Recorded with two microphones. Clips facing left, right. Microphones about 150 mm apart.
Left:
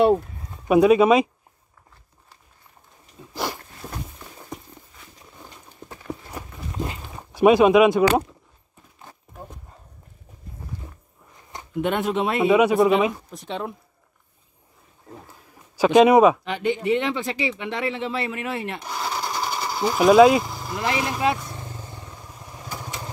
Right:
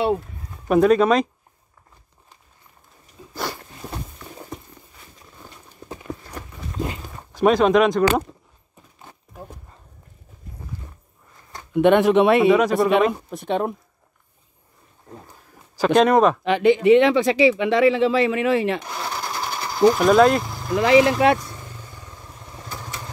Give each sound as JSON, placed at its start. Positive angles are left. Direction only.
{"t": 0.7, "sound": "speech", "side_deg": 10}
{"t": 3.8, "sound": "walk", "side_deg": -15}
{"t": 7.2, "sound": "speech", "side_deg": 10}
{"t": 11.7, "sound": "speech", "side_deg": -80}
{"t": 12.4, "sound": "speech", "side_deg": 10}
{"t": 13.3, "sound": "speech", "side_deg": -55}
{"t": 15.8, "sound": "speech", "side_deg": 5}
{"t": 16.4, "sound": "speech", "side_deg": -90}
{"t": 18.9, "sound": "sewing machine", "side_deg": 0}
{"t": 20.9, "sound": "speech", "side_deg": -80}
{"t": 21.5, "sound": "vehicle", "side_deg": 25}
{"t": 22.3, "sound": "motorcycle", "side_deg": 10}